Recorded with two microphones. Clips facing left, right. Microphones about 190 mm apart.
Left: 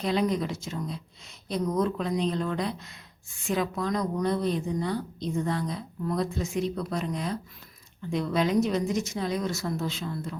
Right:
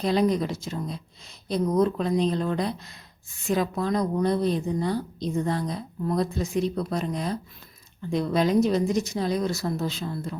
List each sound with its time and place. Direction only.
0.0 s a woman's voice: 35° right (ahead or behind)